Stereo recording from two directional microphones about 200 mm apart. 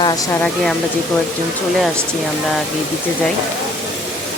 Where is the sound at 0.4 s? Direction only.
Centre (ahead or behind).